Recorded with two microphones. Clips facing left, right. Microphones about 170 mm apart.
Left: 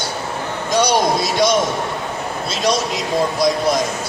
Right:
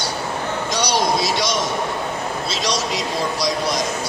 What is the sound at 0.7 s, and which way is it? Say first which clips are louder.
Speech: left 5 dB; 50° left (ahead or behind).